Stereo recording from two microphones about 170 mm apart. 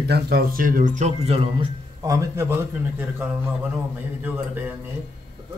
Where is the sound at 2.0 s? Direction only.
20° right (ahead or behind).